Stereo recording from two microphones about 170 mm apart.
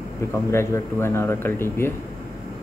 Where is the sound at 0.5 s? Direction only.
15° left (ahead or behind).